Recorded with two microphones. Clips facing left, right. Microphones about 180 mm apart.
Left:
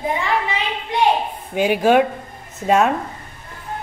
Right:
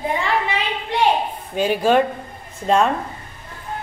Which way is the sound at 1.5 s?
10° left (ahead or behind).